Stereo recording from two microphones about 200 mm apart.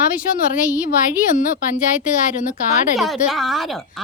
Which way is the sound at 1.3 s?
40° left (ahead or behind).